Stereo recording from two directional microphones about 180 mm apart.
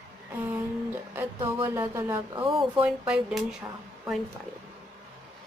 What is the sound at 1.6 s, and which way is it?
Speech, 15° right (ahead or behind).